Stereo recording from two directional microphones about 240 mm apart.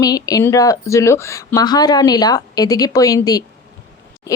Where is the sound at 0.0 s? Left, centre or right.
Centre.